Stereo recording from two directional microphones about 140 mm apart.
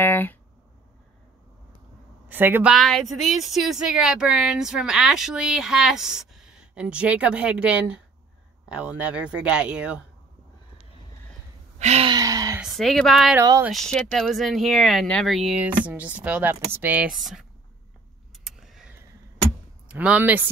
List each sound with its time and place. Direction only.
0.0 s a sound: 15° left (ahead or behind)
2.2 s a woman's voice: 15° right (ahead or behind)
2.7 s speech: centre (ahead or behind)
11.8 s gasp: 50° right (ahead or behind)
12.1 s a sound: 25° right (ahead or behind)
12.5 s speech: centre (ahead or behind)
13.4 s speech: 20° right (ahead or behind)
13.7 s speech: 5° left (ahead or behind)
18.3 s a sound: centre (ahead or behind)
19.9 s speech: 10° right (ahead or behind)